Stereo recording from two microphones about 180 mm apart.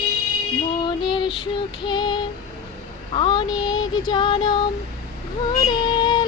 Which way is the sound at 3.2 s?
25° left (ahead or behind).